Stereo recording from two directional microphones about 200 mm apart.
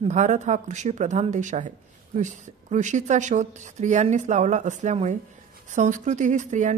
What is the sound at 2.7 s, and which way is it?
A woman's voice, 35° right (ahead or behind).